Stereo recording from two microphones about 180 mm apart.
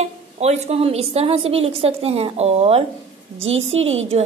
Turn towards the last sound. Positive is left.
turn(degrees=-35)  # may be behind; listen again after turning